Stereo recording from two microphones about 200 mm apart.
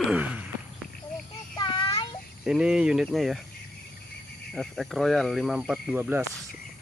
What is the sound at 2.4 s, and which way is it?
Speech, 5° right (ahead or behind).